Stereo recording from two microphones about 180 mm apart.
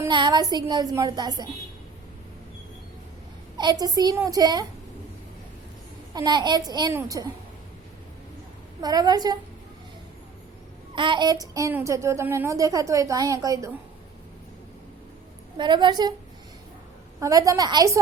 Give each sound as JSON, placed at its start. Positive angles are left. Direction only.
{"t": 0.0, "sound": "a woman's voice", "side_deg": -25}
{"t": 3.6, "sound": "a woman's voice", "side_deg": -20}
{"t": 6.1, "sound": "a woman's voice", "side_deg": -25}
{"t": 8.8, "sound": "a woman's voice", "side_deg": -20}
{"t": 10.9, "sound": "a child's voice", "side_deg": -25}
{"t": 15.5, "sound": "a woman's voice", "side_deg": -25}
{"t": 17.2, "sound": "a woman's voice", "side_deg": -20}